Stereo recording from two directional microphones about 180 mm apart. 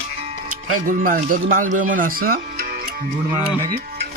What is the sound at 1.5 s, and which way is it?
Speech, 45° right (ahead or behind).